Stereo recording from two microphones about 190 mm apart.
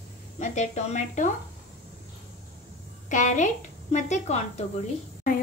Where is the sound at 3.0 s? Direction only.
40° left (ahead or behind).